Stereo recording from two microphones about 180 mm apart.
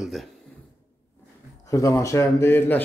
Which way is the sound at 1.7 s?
15° left (ahead or behind).